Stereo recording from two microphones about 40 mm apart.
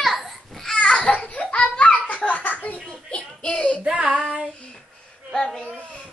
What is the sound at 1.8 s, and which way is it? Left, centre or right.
Belly laugh, left.